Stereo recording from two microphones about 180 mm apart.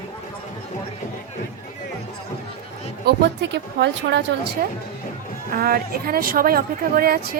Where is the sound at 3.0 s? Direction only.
70° right (ahead or behind).